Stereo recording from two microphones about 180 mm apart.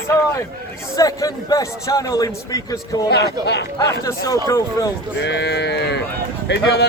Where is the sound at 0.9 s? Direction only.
20° left (ahead or behind).